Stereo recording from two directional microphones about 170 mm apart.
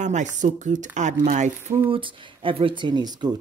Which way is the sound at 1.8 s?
30° right (ahead or behind).